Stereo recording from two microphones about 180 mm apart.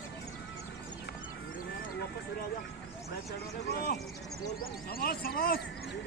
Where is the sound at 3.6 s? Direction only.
60° left (ahead or behind).